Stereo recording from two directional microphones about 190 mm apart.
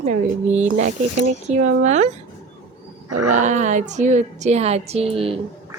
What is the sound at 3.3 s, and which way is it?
Speech, 40° right (ahead or behind).